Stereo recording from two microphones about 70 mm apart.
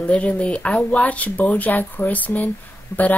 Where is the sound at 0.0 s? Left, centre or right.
Centre.